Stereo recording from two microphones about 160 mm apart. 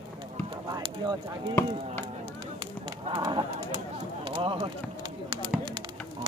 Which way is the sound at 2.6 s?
30° right (ahead or behind).